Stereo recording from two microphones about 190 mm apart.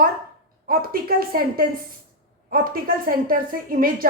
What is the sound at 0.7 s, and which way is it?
A woman's voice, 50° right (ahead or behind).